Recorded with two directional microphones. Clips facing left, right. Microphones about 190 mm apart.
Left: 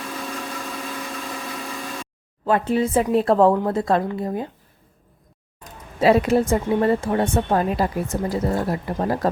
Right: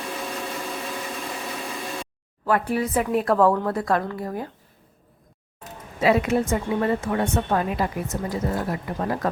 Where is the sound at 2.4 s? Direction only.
25° left (ahead or behind).